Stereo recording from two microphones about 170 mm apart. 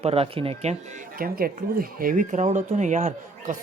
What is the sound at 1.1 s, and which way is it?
Speech, 60° right (ahead or behind).